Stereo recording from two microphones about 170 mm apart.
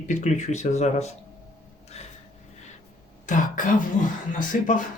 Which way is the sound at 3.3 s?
50° left (ahead or behind).